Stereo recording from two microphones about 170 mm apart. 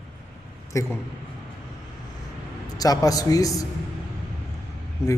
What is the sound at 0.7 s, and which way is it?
Speech, 20° left (ahead or behind).